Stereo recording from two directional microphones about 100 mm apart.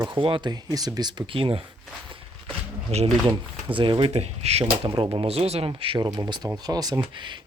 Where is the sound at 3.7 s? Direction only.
55° right (ahead or behind); by 4.6 s 90° right.